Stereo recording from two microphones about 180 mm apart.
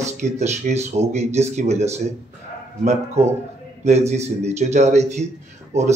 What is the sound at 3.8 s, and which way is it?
Speech, 40° right (ahead or behind).